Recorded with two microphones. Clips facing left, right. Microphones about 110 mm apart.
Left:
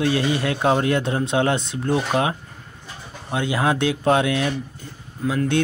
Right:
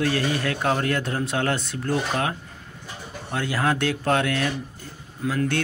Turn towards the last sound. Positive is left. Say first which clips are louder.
# left 3 dB
turn(degrees=5)  # may be behind; listen again after turning